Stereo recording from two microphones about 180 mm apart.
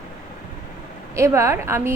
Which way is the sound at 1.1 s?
15° right (ahead or behind).